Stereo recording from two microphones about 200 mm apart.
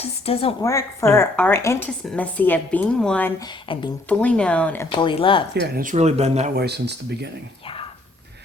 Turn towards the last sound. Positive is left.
turn(degrees=-55)  # may be behind; listen again after turning